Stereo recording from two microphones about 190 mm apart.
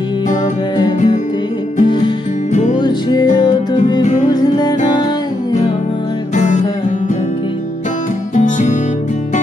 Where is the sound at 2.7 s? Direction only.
20° left (ahead or behind).